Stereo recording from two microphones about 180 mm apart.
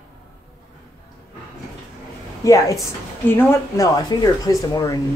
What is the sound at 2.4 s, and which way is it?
Speech, 20° left (ahead or behind).